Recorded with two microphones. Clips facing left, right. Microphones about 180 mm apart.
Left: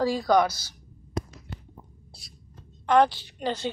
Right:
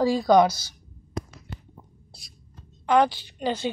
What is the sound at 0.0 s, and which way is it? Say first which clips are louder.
Speech: right 4 dB; 20° right (ahead or behind).